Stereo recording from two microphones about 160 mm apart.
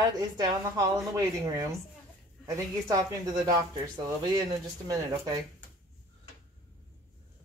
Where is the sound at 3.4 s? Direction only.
25° right (ahead or behind).